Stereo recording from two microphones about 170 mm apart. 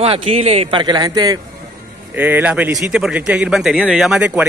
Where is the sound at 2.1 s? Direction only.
10° right (ahead or behind).